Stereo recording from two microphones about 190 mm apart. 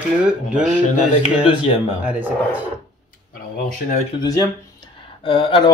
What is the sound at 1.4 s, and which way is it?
Speech, 25° left (ahead or behind).